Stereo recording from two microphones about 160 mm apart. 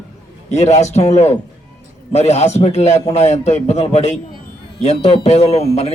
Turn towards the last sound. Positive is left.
turn(degrees=40)  # may be behind; listen again after turning